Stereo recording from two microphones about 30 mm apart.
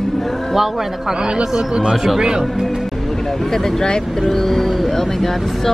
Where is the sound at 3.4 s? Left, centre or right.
Centre.